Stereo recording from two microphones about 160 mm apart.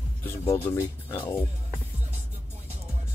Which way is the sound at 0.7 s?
15° left (ahead or behind).